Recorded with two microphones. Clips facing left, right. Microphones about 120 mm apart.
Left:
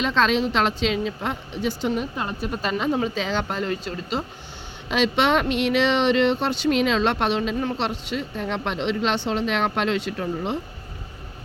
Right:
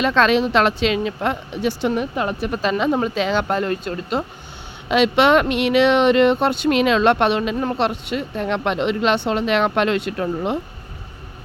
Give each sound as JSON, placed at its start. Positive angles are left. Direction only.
{"t": 0.0, "sound": "speech", "side_deg": -65}